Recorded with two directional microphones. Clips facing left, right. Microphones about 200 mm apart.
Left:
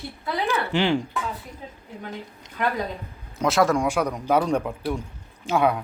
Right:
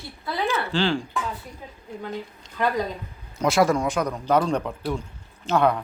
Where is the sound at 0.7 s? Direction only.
20° left (ahead or behind).